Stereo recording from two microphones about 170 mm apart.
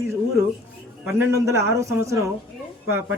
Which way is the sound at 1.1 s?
15° right (ahead or behind).